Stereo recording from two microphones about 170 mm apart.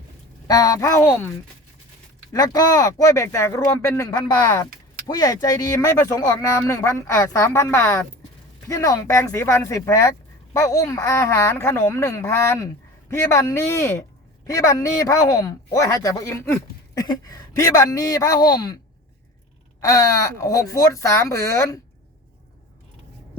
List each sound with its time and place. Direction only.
0.4 s speech: 20° left (ahead or behind)
2.3 s speech: 20° left (ahead or behind)
19.8 s speech: 20° left (ahead or behind)